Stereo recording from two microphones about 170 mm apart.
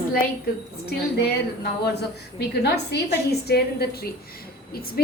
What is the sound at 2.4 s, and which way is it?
A woman's voice, 75° left (ahead or behind).